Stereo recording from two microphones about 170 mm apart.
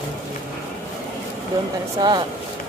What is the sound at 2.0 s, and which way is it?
Speech, 25° right (ahead or behind).